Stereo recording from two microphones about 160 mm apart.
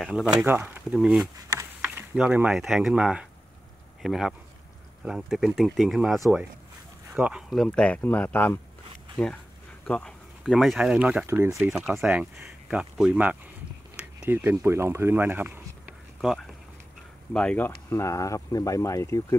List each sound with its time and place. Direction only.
0.0 s speech: centre (ahead or behind)
0.9 s speech: centre (ahead or behind)
1.2 s speech: 20° right (ahead or behind); by 19.2 s 20° left (ahead or behind)